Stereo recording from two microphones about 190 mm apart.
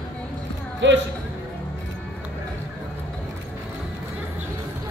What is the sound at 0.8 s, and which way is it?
Speech, 75° right (ahead or behind).